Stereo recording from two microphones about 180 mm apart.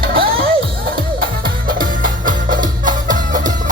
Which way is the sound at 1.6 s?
50° right (ahead or behind).